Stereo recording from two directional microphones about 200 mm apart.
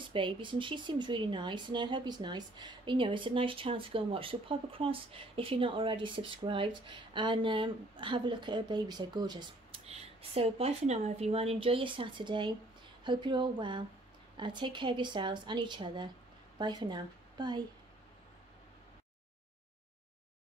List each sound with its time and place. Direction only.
0.1 s speech: 25° right (ahead or behind)
9.8 s a woman's voice: 30° right (ahead or behind)